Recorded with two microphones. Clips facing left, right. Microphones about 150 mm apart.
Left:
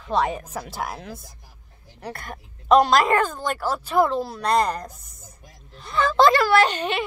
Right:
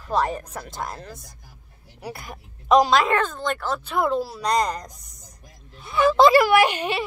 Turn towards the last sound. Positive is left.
turn(degrees=-10)  # may be behind; listen again after turning